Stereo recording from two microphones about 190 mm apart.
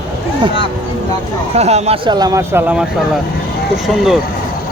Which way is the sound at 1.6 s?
35° right (ahead or behind).